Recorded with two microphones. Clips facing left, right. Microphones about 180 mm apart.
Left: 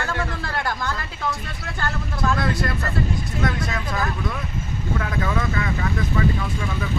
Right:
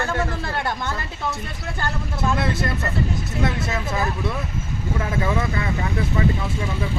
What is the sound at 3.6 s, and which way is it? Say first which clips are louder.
Speech: right 2 dB; 25° right (ahead or behind).